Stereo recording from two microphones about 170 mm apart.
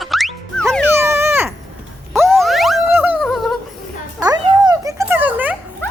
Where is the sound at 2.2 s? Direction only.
Centre (ahead or behind).